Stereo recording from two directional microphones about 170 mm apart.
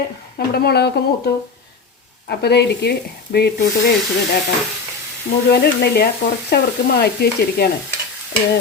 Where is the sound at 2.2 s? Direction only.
75° left (ahead or behind).